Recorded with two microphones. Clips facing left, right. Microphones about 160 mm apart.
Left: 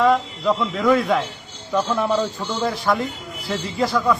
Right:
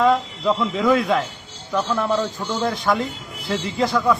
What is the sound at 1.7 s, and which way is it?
Speech, 15° left (ahead or behind).